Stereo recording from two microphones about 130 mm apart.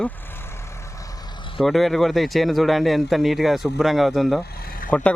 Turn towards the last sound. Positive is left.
turn(degrees=90)